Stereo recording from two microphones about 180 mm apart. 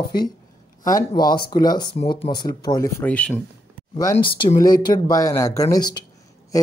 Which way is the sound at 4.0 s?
25° left (ahead or behind).